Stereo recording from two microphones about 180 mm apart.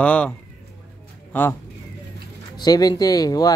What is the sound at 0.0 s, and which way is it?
Speech, 5° left (ahead or behind).